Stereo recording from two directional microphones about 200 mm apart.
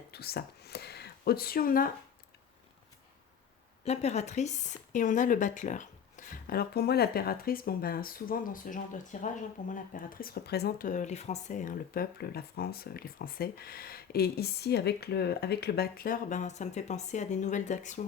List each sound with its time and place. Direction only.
0.1 s speech: 50° left (ahead or behind)
3.8 s speech: 35° left (ahead or behind)